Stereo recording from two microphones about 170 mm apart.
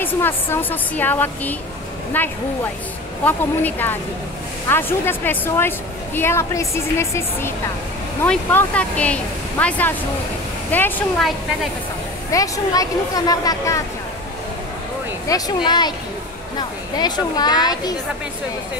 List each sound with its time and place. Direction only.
0.0 s speech: 10° left (ahead or behind)
12.3 s speech: 20° left (ahead or behind)
15.2 s speech: 20° left (ahead or behind)